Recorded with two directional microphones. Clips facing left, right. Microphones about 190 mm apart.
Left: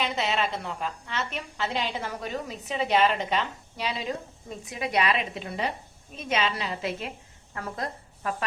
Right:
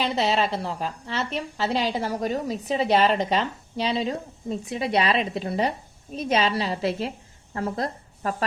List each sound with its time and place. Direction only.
0.0 s a woman's voice: 35° right (ahead or behind)